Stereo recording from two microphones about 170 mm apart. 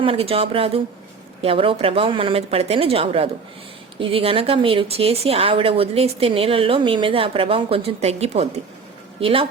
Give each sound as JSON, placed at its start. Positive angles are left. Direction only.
{"t": 0.0, "sound": "speech", "side_deg": -35}